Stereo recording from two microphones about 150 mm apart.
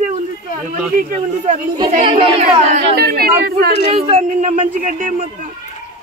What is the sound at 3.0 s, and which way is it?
Speech, 90° right.